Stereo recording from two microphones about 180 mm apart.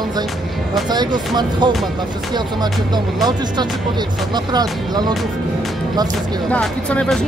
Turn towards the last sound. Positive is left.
turn(degrees=5)  # may be behind; listen again after turning